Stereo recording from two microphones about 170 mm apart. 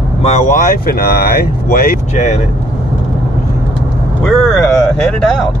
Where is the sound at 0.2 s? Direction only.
40° left (ahead or behind).